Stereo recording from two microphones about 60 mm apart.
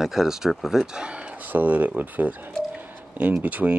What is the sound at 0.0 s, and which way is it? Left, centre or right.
Speech, centre.